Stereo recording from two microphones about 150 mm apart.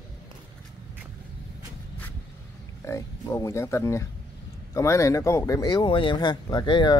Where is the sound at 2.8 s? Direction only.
20° left (ahead or behind).